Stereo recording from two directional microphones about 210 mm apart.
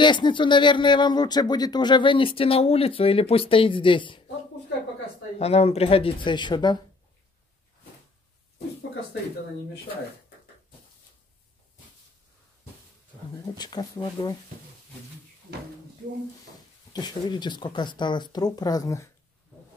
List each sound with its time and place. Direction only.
0.0 s speech: 20° left (ahead or behind)
5.4 s speech: 30° left (ahead or behind)
13.6 s speech: 20° left (ahead or behind)
16.9 s speech: 20° left (ahead or behind)